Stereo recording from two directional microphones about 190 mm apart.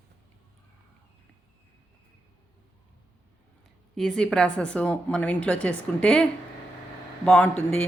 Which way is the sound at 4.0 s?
5° left (ahead or behind).